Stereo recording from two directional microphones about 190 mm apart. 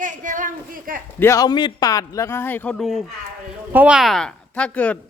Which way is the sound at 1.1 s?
15° left (ahead or behind).